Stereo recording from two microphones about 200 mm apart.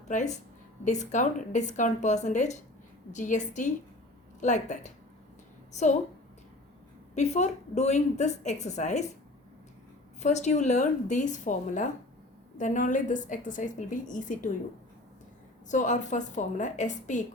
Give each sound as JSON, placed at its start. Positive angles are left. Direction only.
{"t": 0.1, "sound": "a woman's voice", "side_deg": 35}
{"t": 7.2, "sound": "a woman's voice", "side_deg": 35}
{"t": 10.2, "sound": "a woman's voice", "side_deg": 35}
{"t": 15.7, "sound": "a woman's voice", "side_deg": 40}